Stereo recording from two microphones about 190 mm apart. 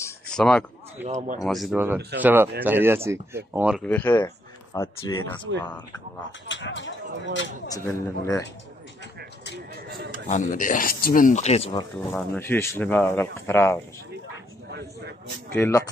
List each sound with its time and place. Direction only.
0.3 s speech: 5° left (ahead or behind)
1.0 s speech: 40° right (ahead or behind)
1.4 s speech: centre (ahead or behind)
2.0 s speech: 60° right (ahead or behind)
2.2 s speech: 10° right (ahead or behind)
3.7 s speech: 10° left (ahead or behind)
6.4 s speech: 75° left (ahead or behind)
7.7 s speech: 15° left (ahead or behind)
9.8 s speech: 55° right (ahead or behind)
10.2 s speech: 40° left (ahead or behind)
12.1 s speech: 10° left (ahead or behind)
15.5 s speech: 10° left (ahead or behind)